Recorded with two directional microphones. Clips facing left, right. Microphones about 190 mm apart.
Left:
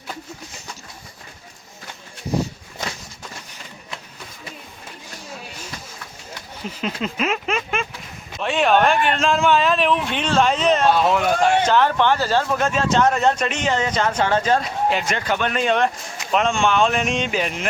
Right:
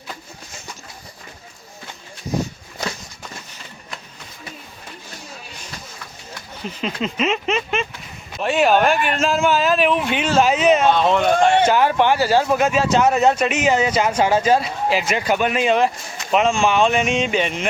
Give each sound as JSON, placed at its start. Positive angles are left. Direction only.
{"t": 6.7, "sound": "a sound", "side_deg": 0}
{"t": 8.4, "sound": "a man's voice", "side_deg": -5}
{"t": 10.9, "sound": "a man's voice", "side_deg": 5}
{"t": 11.6, "sound": "a man's voice", "side_deg": -10}